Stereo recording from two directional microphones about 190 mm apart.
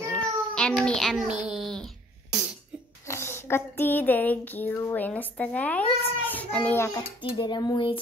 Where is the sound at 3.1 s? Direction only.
15° left (ahead or behind).